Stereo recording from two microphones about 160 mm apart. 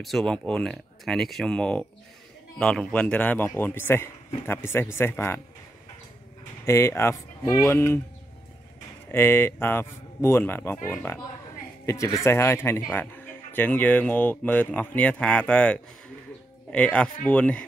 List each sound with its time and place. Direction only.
0.0 s speech: 5° left (ahead or behind)
6.6 s speech: 15° left (ahead or behind)
9.1 s speech: 15° left (ahead or behind)